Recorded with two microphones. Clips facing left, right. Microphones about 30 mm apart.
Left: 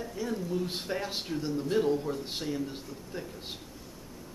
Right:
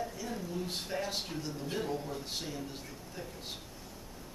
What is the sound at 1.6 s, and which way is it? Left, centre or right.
A man's voice, centre.